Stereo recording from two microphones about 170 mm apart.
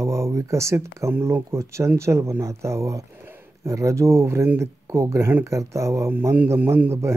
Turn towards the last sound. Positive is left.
turn(degrees=-15)  # may be behind; listen again after turning